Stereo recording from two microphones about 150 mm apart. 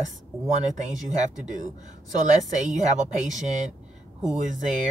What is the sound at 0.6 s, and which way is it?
A woman's voice, 55° right (ahead or behind).